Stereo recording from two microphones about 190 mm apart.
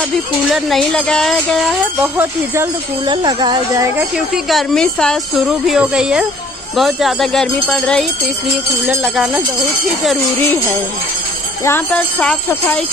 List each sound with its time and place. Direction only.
0.5 s speech: centre (ahead or behind)
2.1 s speech: 15° right (ahead or behind)
4.5 s speech: centre (ahead or behind)
11.6 s speech: 10° left (ahead or behind)